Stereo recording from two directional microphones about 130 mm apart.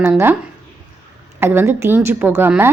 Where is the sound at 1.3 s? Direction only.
15° right (ahead or behind).